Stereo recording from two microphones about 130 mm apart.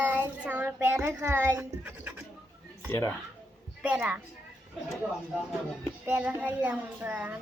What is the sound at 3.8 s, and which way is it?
Speech, 10° right (ahead or behind).